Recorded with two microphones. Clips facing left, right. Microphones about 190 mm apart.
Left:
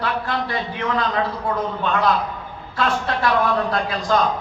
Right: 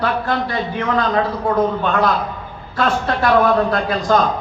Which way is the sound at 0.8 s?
45° right (ahead or behind).